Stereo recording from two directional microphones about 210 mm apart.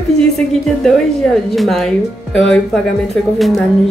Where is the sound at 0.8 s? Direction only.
Centre (ahead or behind).